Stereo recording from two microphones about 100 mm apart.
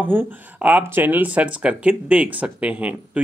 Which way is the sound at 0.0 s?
20° right (ahead or behind).